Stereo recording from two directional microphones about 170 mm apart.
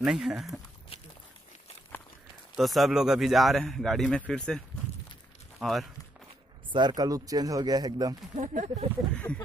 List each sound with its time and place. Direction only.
0.0 s a man's voice: 5° right (ahead or behind)
2.5 s a man's voice: centre (ahead or behind)
5.6 s a man's voice: centre (ahead or behind)
6.7 s speech: 25° right (ahead or behind)
8.4 s speech: 40° right (ahead or behind)
9.1 s speech: 5° left (ahead or behind)